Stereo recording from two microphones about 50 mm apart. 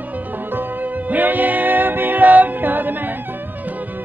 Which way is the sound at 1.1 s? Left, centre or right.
Right.